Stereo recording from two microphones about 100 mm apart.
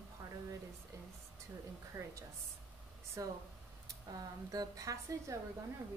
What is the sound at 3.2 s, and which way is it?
Speech, 35° right (ahead or behind).